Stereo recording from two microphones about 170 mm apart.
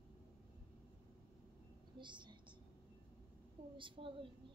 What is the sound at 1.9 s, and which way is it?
Whispering, 25° right (ahead or behind).